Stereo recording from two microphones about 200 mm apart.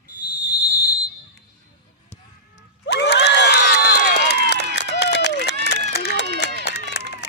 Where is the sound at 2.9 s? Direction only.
55° left (ahead or behind).